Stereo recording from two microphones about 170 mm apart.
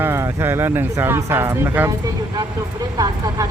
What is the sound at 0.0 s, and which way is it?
Speech, 15° right (ahead or behind).